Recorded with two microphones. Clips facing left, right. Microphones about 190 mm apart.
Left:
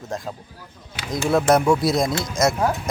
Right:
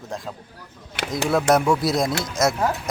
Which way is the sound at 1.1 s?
Centre (ahead or behind).